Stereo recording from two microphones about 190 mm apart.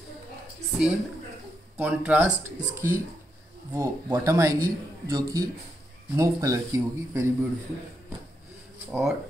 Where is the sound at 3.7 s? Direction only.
15° right (ahead or behind).